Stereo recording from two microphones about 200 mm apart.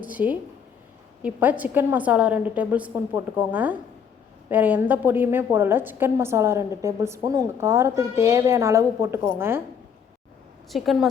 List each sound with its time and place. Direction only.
0.1 s a woman's voice: 10° right (ahead or behind)
10.7 s a woman's voice: centre (ahead or behind)